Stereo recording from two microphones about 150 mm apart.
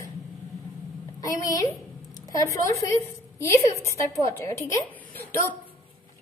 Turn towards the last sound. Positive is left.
turn(degrees=15)  # may be behind; listen again after turning